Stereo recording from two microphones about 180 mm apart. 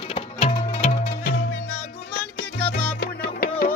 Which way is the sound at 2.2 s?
10° left (ahead or behind).